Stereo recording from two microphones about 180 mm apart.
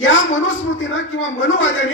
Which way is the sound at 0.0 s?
90° left.